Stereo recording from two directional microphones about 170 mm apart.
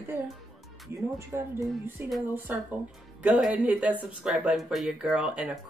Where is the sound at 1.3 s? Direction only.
15° right (ahead or behind).